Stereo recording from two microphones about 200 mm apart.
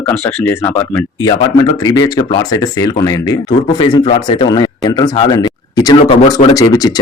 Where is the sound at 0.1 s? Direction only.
10° left (ahead or behind).